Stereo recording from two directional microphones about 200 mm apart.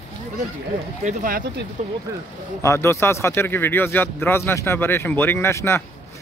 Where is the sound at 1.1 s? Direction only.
45° right (ahead or behind).